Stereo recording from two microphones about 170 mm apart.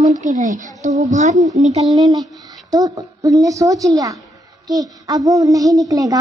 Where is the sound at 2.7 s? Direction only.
20° right (ahead or behind).